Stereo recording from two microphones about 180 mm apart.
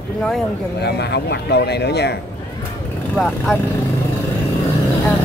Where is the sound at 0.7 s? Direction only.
65° left (ahead or behind).